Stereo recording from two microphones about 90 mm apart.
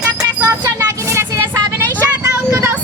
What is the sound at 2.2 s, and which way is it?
Vehicle, 35° right (ahead or behind).